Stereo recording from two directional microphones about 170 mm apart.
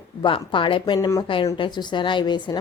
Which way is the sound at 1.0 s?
15° left (ahead or behind).